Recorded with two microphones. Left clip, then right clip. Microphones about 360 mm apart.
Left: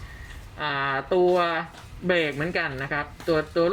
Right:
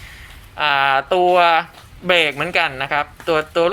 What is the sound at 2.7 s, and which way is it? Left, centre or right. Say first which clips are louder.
Speech: right 9 dB; centre.